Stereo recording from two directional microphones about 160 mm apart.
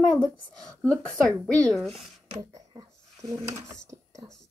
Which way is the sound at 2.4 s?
25° right (ahead or behind).